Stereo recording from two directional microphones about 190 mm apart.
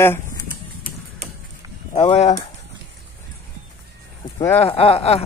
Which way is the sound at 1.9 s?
30° left (ahead or behind).